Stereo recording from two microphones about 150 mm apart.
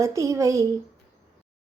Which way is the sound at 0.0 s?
20° right (ahead or behind).